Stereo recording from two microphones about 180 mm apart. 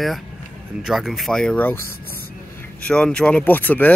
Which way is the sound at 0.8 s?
Centre (ahead or behind).